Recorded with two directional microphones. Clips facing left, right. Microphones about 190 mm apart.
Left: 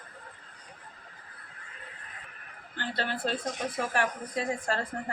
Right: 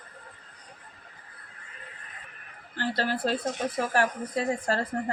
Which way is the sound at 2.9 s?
40° right (ahead or behind).